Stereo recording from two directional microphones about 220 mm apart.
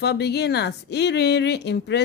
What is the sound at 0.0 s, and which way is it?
A woman's voice, 50° left (ahead or behind).